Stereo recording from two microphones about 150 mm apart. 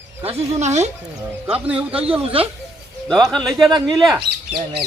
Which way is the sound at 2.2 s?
40° right (ahead or behind).